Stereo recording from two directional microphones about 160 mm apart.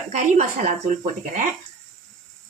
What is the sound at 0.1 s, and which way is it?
Speech, 50° right (ahead or behind).